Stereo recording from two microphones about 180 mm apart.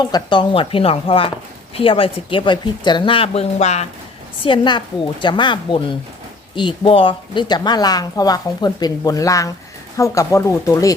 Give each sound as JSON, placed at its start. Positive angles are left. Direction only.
{"t": 0.0, "sound": "a woman's voice", "side_deg": 25}
{"t": 4.4, "sound": "a woman's voice", "side_deg": 25}